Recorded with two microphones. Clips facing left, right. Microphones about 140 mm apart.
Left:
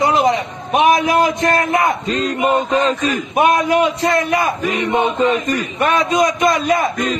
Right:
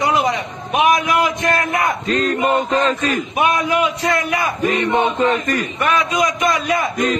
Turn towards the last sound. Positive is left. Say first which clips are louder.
# left 3 dB
turn(degrees=30)  # may be behind; listen again after turning